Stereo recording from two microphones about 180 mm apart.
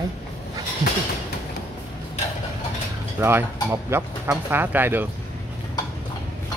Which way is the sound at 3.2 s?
15° right (ahead or behind).